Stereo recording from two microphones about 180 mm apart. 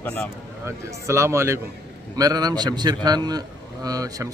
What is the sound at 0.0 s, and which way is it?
Speech, 5° left (ahead or behind).